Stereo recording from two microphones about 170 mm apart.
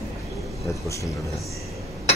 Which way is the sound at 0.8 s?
15° left (ahead or behind).